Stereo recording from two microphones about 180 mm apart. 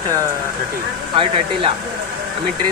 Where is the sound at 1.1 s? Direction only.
30° right (ahead or behind).